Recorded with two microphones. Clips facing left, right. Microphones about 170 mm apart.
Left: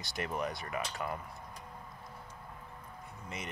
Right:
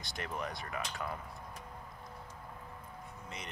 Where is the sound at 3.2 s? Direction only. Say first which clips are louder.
Left 5 dB; 5° left (ahead or behind).